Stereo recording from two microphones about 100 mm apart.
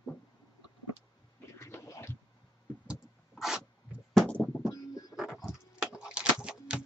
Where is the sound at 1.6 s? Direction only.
25° left (ahead or behind).